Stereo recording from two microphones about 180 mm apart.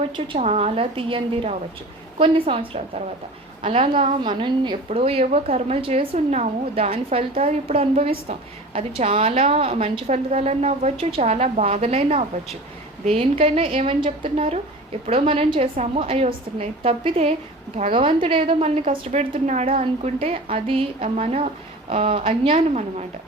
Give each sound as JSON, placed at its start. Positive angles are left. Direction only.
{"t": 0.3, "sound": "a woman's voice", "side_deg": -35}